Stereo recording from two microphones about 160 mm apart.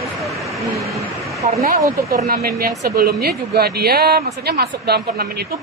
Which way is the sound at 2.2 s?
75° right (ahead or behind).